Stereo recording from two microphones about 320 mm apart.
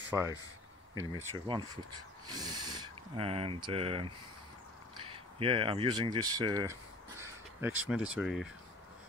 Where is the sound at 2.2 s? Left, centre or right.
Centre.